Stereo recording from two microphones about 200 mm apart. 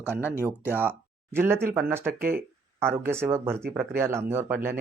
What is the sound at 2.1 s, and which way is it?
Speech, 50° right (ahead or behind).